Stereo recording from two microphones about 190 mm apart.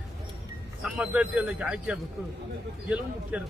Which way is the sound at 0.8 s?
5° right (ahead or behind).